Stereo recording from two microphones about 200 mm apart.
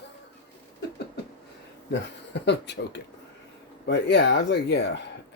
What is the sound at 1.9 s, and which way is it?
Speech, 60° left (ahead or behind).